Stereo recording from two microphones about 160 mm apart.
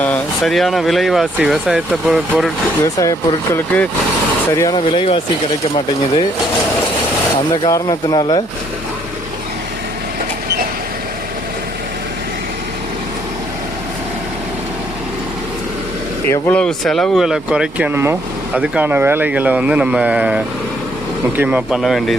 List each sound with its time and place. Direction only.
0.0 s speech: 5° left (ahead or behind)
2.8 s speech: 20° left (ahead or behind)
4.9 s speech: 35° left (ahead or behind)
7.5 s speech: 25° left (ahead or behind)
16.3 s speech: 10° left (ahead or behind)